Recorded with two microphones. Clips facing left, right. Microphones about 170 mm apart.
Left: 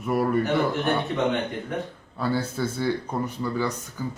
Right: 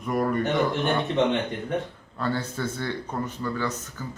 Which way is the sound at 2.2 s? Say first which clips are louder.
Left 2 dB; 10° left (ahead or behind).